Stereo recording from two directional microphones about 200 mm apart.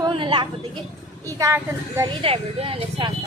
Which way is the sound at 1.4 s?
15° right (ahead or behind).